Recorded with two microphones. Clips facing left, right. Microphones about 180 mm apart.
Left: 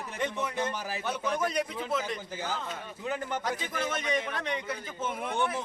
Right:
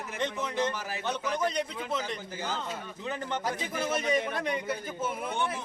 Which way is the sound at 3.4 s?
10° right (ahead or behind).